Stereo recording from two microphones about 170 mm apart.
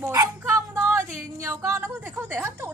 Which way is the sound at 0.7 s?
15° right (ahead or behind).